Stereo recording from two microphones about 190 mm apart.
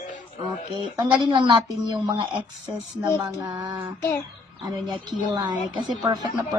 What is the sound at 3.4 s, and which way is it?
A woman's voice, 20° right (ahead or behind).